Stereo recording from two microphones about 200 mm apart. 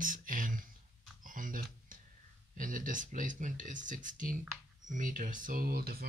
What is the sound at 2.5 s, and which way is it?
Speech, 40° right (ahead or behind).